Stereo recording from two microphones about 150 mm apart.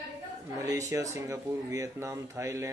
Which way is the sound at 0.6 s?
20° right (ahead or behind).